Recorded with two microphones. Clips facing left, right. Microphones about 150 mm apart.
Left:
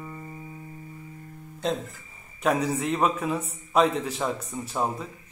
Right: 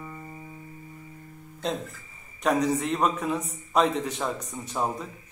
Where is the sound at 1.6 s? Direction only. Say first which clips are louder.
Left 2 dB; centre (ahead or behind).